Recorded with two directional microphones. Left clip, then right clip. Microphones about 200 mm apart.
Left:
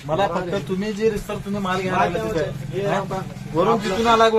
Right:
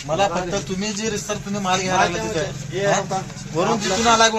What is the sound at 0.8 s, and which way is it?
Speech, 30° left (ahead or behind).